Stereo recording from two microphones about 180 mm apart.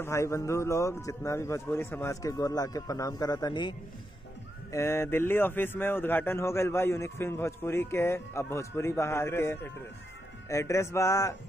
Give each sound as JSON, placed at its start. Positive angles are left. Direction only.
{"t": 0.0, "sound": "speech", "side_deg": 15}
{"t": 4.7, "sound": "speech", "side_deg": 15}